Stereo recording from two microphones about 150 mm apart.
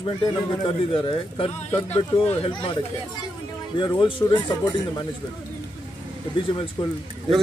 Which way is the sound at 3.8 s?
30° left (ahead or behind).